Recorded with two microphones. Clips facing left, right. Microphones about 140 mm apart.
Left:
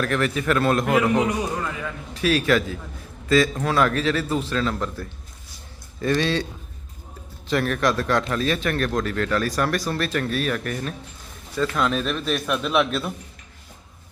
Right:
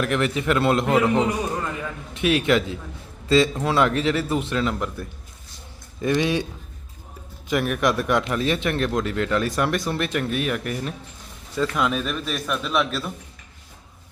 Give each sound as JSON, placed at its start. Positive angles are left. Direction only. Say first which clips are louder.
{"t": 0.0, "sound": "a man's voice", "louder": "even", "side_deg": -20}
{"t": 7.5, "sound": "a man's voice", "louder": "even", "side_deg": -15}